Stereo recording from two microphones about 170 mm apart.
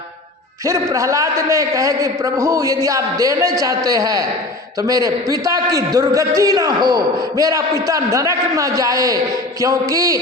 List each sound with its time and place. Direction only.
0.6 s a man's voice: 20° right (ahead or behind)